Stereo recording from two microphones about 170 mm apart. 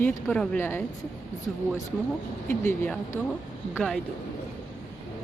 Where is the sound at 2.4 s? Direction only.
10° left (ahead or behind).